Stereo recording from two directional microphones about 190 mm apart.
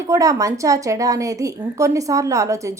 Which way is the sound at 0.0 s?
15° right (ahead or behind).